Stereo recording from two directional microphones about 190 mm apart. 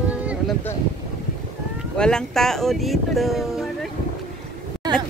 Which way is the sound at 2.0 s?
5° left (ahead or behind).